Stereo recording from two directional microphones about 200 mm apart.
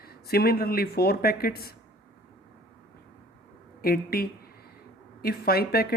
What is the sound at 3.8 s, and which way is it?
Speech, 50° left (ahead or behind).